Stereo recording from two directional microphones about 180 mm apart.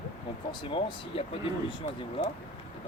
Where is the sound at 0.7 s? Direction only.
30° left (ahead or behind).